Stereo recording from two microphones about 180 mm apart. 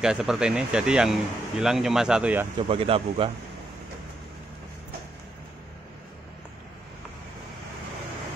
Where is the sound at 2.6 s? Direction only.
30° right (ahead or behind).